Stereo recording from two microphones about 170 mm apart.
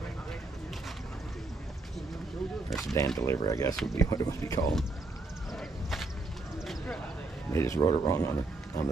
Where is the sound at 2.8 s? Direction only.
20° left (ahead or behind).